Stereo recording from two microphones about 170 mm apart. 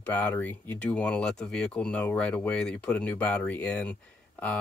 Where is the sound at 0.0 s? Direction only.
10° left (ahead or behind).